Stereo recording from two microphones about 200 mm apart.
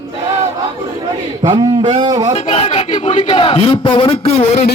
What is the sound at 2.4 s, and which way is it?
A man's voice, 30° left (ahead or behind).